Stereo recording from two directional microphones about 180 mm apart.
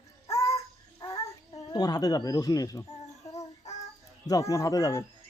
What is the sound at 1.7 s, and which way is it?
Speech, 20° left (ahead or behind).